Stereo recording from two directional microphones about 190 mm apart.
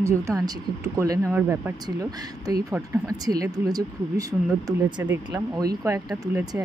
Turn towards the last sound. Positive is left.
turn(degrees=-20)  # may be behind; listen again after turning